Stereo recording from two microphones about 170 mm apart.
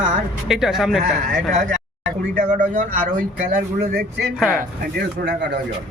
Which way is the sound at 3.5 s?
65° right (ahead or behind).